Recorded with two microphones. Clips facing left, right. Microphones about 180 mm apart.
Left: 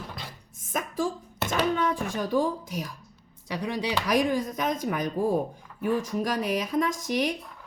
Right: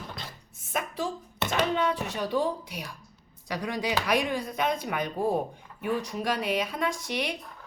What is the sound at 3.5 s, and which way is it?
Speech, 25° left (ahead or behind).